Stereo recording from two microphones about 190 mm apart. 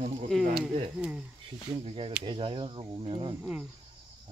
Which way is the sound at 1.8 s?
30° right (ahead or behind).